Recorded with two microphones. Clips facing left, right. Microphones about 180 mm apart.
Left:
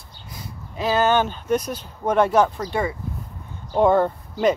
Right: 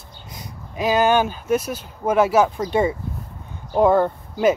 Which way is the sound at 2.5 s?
20° right (ahead or behind).